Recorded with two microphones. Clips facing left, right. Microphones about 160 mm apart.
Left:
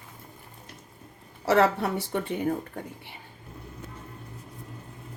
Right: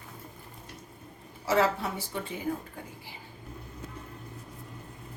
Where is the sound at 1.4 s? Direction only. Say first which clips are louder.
Left 4 dB; 65° left (ahead or behind).